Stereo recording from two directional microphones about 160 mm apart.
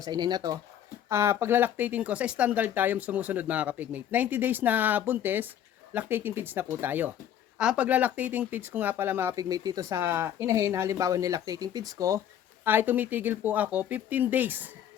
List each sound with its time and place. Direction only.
0.0 s speech: 25° right (ahead or behind)